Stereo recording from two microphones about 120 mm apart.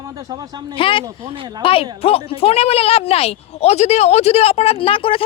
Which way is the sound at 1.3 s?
40° right (ahead or behind).